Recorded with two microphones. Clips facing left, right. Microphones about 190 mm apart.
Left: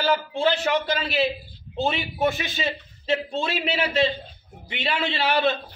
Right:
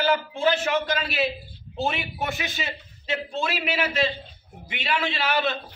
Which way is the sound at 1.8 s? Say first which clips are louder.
Left 4 dB; 30° left (ahead or behind).